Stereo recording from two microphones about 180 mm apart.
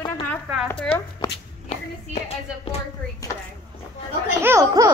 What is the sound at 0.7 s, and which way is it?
Speech, 10° left (ahead or behind).